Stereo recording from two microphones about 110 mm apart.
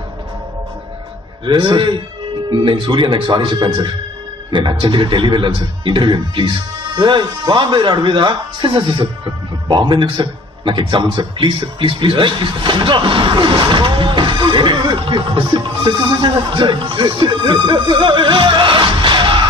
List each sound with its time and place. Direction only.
1.4 s a man's voice: 45° right (ahead or behind)